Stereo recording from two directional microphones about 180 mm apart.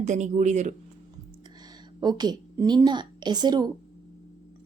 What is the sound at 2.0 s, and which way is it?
A woman's voice, 25° right (ahead or behind).